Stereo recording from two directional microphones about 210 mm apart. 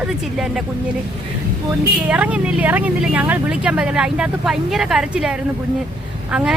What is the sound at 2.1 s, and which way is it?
Speech, 5° right (ahead or behind).